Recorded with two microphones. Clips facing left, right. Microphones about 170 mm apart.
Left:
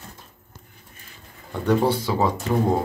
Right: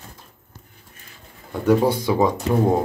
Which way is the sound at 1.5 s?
10° right (ahead or behind).